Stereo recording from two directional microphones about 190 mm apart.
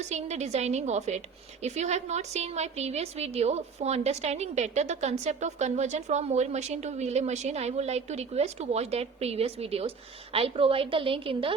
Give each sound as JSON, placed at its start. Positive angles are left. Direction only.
{"t": 0.1, "sound": "a woman's voice", "side_deg": -35}